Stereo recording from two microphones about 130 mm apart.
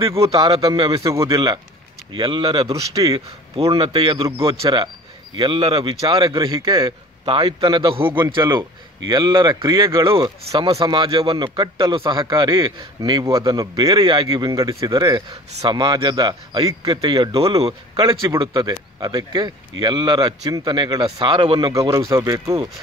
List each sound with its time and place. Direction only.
0.2 s a man's voice: 45° right (ahead or behind)
1.1 s speech: 25° right (ahead or behind)
2.1 s speech: 40° right (ahead or behind)
2.7 s speech: 25° right (ahead or behind)
3.5 s a man's voice: 45° right (ahead or behind)
5.8 s a man's voice: 30° right (ahead or behind)
13.8 s a man's voice: 40° right (ahead or behind)
14.5 s speech: 30° right (ahead or behind)
17.3 s a man's voice: 50° right (ahead or behind)
18.4 s speech: 40° right (ahead or behind)